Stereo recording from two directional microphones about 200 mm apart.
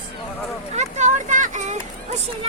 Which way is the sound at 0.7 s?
35° right (ahead or behind).